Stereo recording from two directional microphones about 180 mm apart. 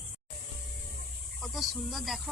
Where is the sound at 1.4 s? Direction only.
Centre (ahead or behind).